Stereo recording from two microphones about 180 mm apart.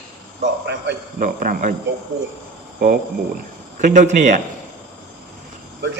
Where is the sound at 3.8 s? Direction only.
45° right (ahead or behind).